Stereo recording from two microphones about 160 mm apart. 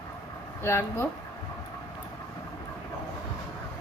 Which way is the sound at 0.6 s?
15° left (ahead or behind).